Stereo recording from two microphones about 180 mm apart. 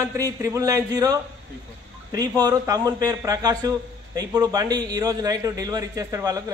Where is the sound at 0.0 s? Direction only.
20° right (ahead or behind).